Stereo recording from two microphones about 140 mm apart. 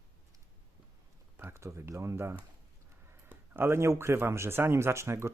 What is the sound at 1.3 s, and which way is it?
Speech, 20° right (ahead or behind).